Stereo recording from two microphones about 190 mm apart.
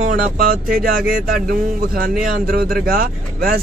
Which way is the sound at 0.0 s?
50° right (ahead or behind).